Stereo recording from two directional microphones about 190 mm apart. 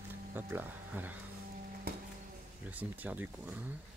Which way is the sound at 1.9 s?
55° right (ahead or behind).